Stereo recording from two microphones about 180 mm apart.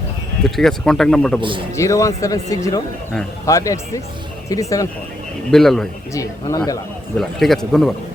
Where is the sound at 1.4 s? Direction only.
25° right (ahead or behind).